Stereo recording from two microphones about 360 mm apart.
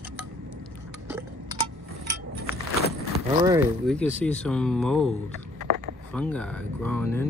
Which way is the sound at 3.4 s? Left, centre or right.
Centre.